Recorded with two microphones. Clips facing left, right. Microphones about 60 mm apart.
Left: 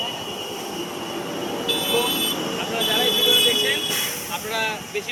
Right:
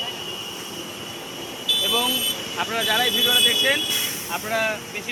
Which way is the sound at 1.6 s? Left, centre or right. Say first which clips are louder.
Even; left.